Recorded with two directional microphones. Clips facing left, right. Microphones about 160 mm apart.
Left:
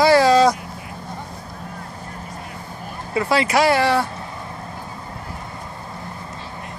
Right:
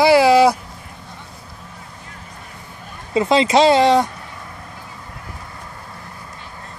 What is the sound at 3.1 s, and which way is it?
Speech, 20° right (ahead or behind).